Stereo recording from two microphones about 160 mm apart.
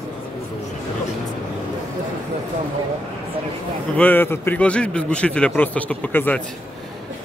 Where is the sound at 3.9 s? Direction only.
10° left (ahead or behind).